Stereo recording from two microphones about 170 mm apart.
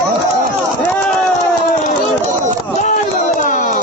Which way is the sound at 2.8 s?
45° left (ahead or behind).